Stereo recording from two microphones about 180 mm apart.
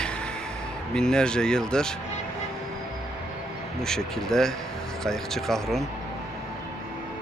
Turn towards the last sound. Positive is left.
turn(degrees=0)  # may be behind; listen again after turning